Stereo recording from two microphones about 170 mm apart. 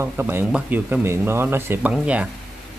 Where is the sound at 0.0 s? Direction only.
10° right (ahead or behind).